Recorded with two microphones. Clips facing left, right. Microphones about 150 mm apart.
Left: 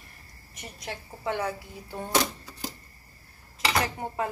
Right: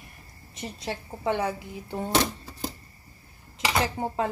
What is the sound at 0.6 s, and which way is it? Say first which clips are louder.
A woman's voice: right 5 dB; 25° right (ahead or behind).